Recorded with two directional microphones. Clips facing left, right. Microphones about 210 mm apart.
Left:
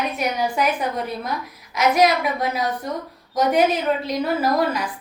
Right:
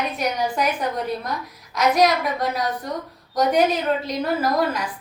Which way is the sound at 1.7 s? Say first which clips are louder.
Left 1 dB; 5° left (ahead or behind).